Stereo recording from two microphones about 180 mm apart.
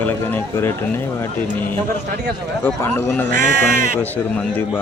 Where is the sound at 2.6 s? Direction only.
10° left (ahead or behind).